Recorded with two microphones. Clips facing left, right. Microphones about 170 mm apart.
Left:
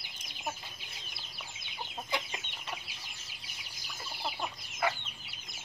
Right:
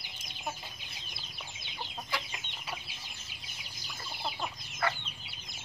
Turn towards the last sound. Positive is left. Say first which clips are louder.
# left 1 dB
turn(degrees=5)  # may be behind; listen again after turning